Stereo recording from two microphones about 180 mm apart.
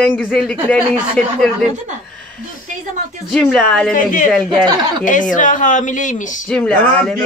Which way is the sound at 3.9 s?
45° left (ahead or behind).